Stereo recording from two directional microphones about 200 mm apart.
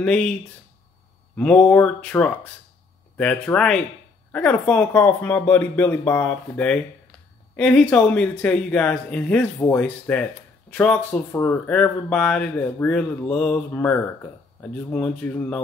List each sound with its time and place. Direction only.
0.0 s speech: 5° left (ahead or behind)
1.3 s speech: 5° left (ahead or behind)